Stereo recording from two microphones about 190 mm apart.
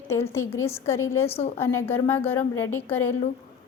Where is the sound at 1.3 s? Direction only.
35° left (ahead or behind).